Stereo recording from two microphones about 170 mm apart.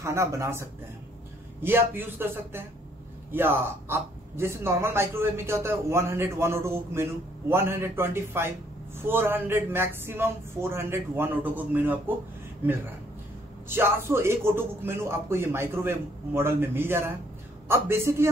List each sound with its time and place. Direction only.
0.0 s speech: 15° right (ahead or behind)
13.7 s speech: 15° right (ahead or behind)